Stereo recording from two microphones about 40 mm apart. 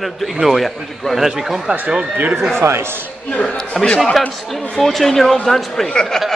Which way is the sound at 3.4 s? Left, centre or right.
Centre.